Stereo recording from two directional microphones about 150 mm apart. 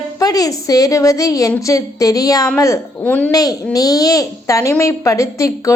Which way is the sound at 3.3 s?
25° left (ahead or behind).